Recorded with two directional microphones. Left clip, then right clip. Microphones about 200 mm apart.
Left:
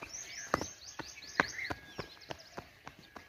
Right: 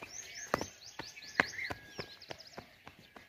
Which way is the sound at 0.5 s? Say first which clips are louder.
Left 1 dB; 35° right (ahead or behind).